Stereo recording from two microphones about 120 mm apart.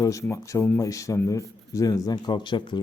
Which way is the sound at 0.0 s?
25° left (ahead or behind).